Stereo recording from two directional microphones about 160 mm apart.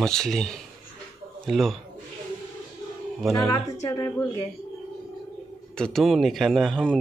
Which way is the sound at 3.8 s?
25° left (ahead or behind).